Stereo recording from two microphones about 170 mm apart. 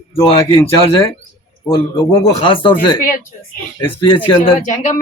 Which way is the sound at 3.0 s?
55° left (ahead or behind).